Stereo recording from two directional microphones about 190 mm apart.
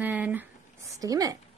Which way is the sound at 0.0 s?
10° right (ahead or behind).